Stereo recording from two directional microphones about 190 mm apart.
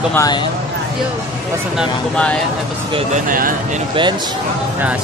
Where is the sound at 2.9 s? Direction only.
40° right (ahead or behind).